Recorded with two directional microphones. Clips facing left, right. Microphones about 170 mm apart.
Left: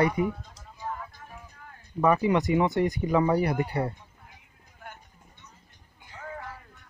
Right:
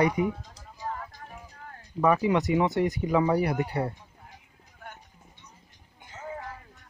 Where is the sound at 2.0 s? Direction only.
Centre (ahead or behind).